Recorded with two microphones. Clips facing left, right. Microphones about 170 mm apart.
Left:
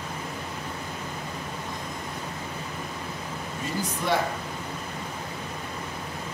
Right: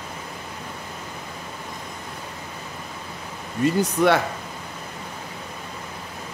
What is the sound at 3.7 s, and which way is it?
Speech, 70° right (ahead or behind).